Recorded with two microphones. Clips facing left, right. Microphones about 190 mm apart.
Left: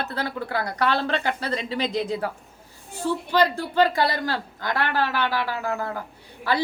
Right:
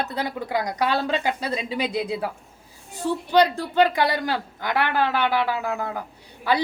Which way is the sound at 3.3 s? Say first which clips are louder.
Right 4 dB; 20° right (ahead or behind).